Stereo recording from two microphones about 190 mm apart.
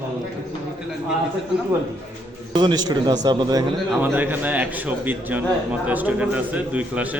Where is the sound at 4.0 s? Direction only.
10° right (ahead or behind).